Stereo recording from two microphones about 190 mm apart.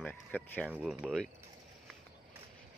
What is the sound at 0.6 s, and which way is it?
Speech, 5° right (ahead or behind).